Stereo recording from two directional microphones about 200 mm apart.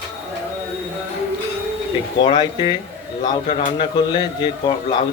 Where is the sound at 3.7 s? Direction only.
20° left (ahead or behind).